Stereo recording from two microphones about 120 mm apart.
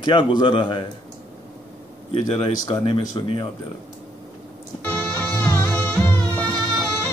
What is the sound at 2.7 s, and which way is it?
Speech, 40° left (ahead or behind).